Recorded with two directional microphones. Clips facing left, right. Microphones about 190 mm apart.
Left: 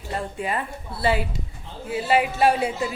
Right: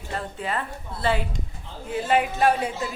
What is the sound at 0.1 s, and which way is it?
A woman's voice, 10° left (ahead or behind).